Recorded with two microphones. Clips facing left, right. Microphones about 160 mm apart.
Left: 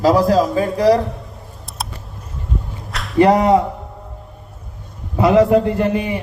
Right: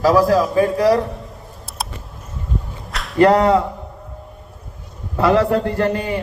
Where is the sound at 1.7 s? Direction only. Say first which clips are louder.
Even; centre (ahead or behind).